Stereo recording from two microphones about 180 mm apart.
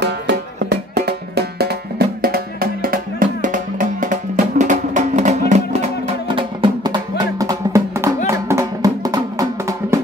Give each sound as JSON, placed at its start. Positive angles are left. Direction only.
{"t": 0.0, "sound": "music", "side_deg": -70}